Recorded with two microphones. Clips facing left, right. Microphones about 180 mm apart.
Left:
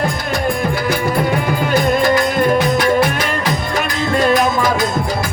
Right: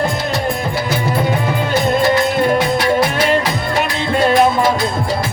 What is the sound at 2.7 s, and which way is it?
Music, 30° right (ahead or behind).